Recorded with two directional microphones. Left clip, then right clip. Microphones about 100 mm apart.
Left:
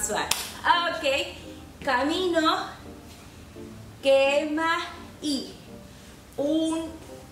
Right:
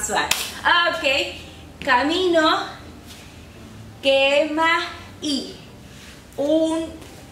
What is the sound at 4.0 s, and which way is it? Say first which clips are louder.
Child singing: right 4 dB; 10° left (ahead or behind).